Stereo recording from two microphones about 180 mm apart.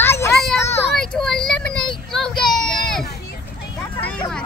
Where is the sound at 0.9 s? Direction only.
5° left (ahead or behind).